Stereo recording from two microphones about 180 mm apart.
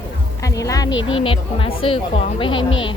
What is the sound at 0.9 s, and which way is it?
Speech, 90° left.